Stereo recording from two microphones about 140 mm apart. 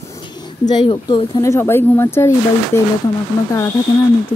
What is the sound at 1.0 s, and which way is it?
Speech, 30° left (ahead or behind).